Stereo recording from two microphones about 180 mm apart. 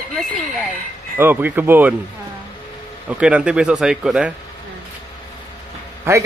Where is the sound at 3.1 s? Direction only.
5° right (ahead or behind).